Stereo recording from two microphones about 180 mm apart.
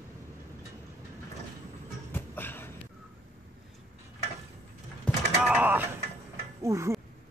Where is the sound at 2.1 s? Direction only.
10° left (ahead or behind).